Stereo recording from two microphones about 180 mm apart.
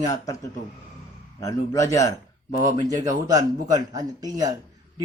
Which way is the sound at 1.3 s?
20° left (ahead or behind).